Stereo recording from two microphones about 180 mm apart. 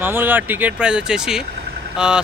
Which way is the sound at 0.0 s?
10° right (ahead or behind).